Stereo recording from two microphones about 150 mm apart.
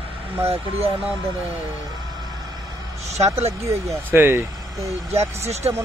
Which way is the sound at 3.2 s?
45° right (ahead or behind).